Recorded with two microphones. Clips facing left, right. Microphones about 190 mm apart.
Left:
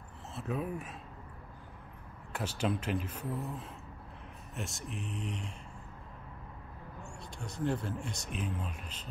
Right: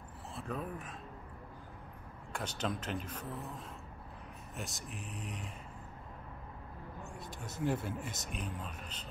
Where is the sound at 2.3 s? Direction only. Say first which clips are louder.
Left 4 dB; 5° left (ahead or behind).